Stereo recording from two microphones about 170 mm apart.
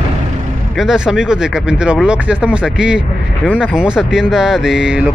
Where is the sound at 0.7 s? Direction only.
5° right (ahead or behind).